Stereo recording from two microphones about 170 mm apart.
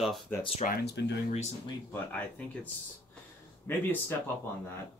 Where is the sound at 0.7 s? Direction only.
80° left.